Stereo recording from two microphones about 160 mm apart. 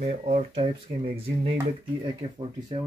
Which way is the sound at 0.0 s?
45° right (ahead or behind).